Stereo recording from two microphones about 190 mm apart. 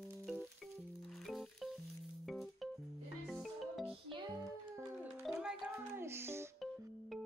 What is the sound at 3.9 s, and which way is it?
Music, 25° right (ahead or behind).